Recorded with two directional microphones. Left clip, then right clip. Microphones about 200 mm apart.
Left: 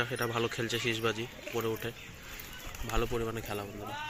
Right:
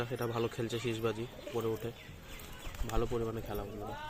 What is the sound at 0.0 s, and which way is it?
A man's voice, centre (ahead or behind).